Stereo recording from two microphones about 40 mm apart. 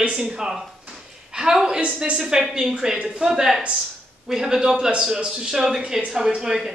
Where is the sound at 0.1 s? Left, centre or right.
Centre.